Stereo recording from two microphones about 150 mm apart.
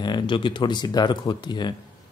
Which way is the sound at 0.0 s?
30° left (ahead or behind).